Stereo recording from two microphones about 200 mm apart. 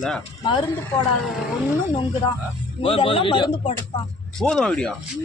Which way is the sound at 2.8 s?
25° left (ahead or behind).